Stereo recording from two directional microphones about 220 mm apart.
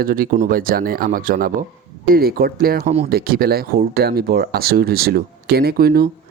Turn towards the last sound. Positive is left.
turn(degrees=-45)  # may be behind; listen again after turning